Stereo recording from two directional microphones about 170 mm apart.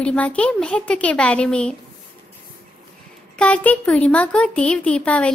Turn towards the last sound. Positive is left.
turn(degrees=5)  # may be behind; listen again after turning